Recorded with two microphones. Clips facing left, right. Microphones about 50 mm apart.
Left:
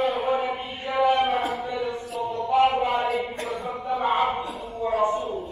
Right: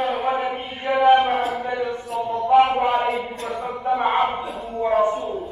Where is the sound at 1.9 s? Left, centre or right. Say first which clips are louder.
Right 4 dB; centre.